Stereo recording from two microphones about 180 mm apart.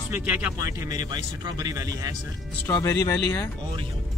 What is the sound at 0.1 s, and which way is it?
Speech, 10° right (ahead or behind).